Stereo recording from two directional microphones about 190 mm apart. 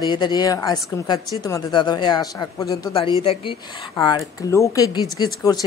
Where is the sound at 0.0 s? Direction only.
25° left (ahead or behind).